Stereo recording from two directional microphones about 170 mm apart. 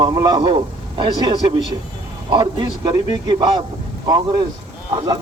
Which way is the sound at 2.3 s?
25° right (ahead or behind).